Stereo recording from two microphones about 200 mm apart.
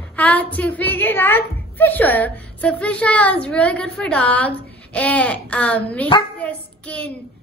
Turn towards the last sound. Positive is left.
turn(degrees=5)  # may be behind; listen again after turning